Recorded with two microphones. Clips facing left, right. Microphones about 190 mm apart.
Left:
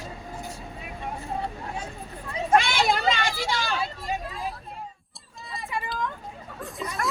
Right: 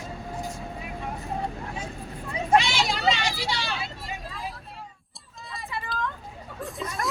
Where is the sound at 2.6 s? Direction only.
55° left (ahead or behind).